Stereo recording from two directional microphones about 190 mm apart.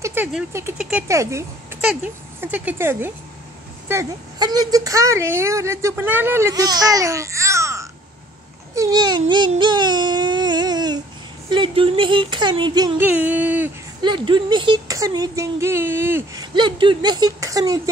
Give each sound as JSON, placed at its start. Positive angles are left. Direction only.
{"t": 0.0, "sound": "a woman's voice", "side_deg": -10}
{"t": 2.4, "sound": "a woman's voice", "side_deg": -10}
{"t": 9.3, "sound": "a sound", "side_deg": -25}
{"t": 11.4, "sound": "speech", "side_deg": -25}
{"t": 14.0, "sound": "a woman's voice", "side_deg": -25}
{"t": 16.5, "sound": "speech", "side_deg": -25}